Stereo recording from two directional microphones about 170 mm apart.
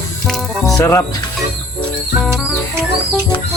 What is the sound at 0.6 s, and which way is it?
Speech, 20° left (ahead or behind).